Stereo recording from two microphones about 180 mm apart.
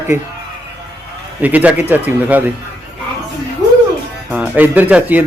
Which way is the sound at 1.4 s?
10° right (ahead or behind).